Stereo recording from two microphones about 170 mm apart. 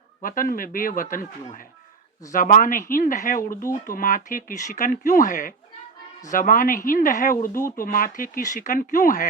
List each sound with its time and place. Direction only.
0.2 s speech: 55° left (ahead or behind)